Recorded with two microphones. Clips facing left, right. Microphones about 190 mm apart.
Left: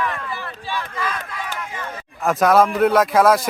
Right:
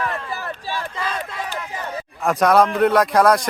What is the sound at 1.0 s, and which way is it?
Run, 25° right (ahead or behind).